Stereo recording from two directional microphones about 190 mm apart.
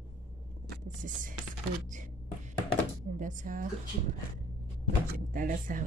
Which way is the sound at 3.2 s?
40° right (ahead or behind).